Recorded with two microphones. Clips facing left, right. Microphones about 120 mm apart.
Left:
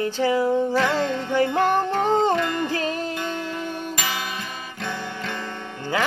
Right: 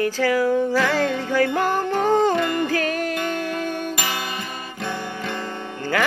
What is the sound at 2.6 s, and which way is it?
Music, 25° left (ahead or behind).